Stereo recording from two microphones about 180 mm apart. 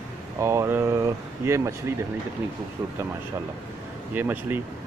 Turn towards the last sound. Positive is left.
turn(degrees=-10)  # may be behind; listen again after turning